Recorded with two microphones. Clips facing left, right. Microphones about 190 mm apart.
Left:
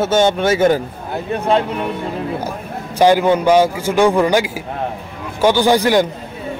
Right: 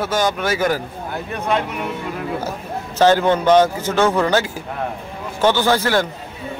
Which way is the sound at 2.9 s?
10° left (ahead or behind).